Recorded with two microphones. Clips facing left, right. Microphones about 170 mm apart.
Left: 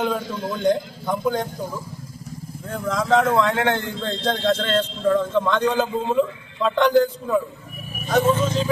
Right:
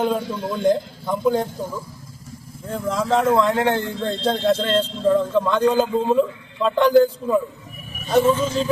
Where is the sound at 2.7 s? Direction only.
5° right (ahead or behind).